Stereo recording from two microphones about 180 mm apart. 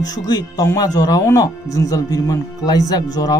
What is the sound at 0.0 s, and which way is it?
Speech, 20° left (ahead or behind).